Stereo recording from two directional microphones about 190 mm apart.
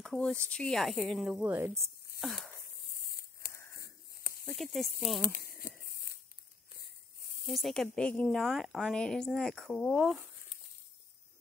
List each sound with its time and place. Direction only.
0.0 s a woman's voice: 5° left (ahead or behind); by 1.9 s 15° right (ahead or behind)
2.1 s a sound: centre (ahead or behind)
3.7 s a sound: 50° left (ahead or behind)
4.6 s a woman's voice: centre (ahead or behind)
5.2 s crumpling: 50° left (ahead or behind)
7.4 s a woman's voice: centre (ahead or behind)